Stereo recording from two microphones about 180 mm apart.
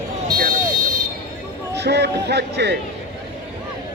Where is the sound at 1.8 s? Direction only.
65° right (ahead or behind).